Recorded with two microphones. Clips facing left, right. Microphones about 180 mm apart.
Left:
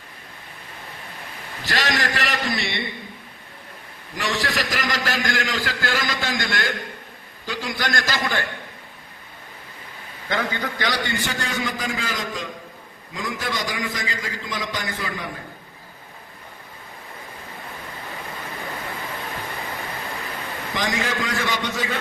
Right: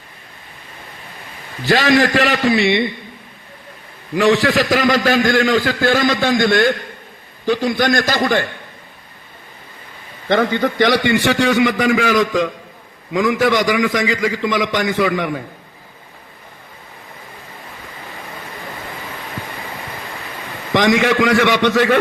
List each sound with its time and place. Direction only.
1.6 s a man's voice: 60° right (ahead or behind)
4.1 s a man's voice: 60° right (ahead or behind)
10.2 s a man's voice: 65° right (ahead or behind)
20.7 s a man's voice: 75° right (ahead or behind)